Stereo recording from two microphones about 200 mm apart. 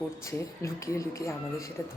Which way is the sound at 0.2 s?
15° left (ahead or behind).